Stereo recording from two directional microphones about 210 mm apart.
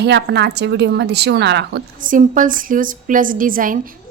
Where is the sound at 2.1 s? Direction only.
40° right (ahead or behind).